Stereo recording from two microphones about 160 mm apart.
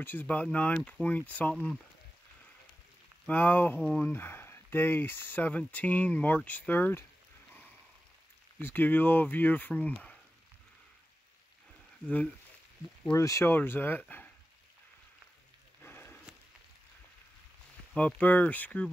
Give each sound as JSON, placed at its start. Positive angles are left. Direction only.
{"t": 0.0, "sound": "speech", "side_deg": 10}
{"t": 3.3, "sound": "speech", "side_deg": 10}
{"t": 8.5, "sound": "speech", "side_deg": 10}
{"t": 13.1, "sound": "speech", "side_deg": 20}
{"t": 15.8, "sound": "a sound", "side_deg": 15}
{"t": 17.9, "sound": "speech", "side_deg": 10}